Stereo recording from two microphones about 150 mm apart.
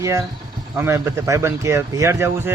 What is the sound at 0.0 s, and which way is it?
Speech, 20° right (ahead or behind).